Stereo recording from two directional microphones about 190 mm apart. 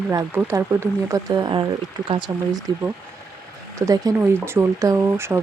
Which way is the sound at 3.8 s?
20° right (ahead or behind).